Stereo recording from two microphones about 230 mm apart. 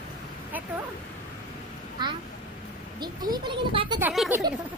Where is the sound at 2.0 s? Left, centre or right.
Centre.